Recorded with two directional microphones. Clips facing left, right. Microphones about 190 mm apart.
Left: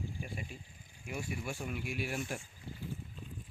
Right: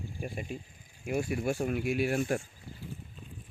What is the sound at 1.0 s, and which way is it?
Speech, 60° right (ahead or behind).